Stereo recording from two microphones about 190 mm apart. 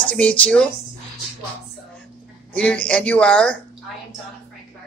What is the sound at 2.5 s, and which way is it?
Speech, 5° left (ahead or behind).